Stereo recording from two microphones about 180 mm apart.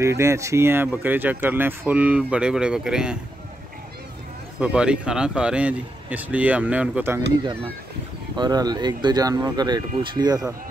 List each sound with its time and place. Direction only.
0.0 s speech: 15° right (ahead or behind)
4.6 s speech: 5° right (ahead or behind)
8.4 s speech: 20° right (ahead or behind)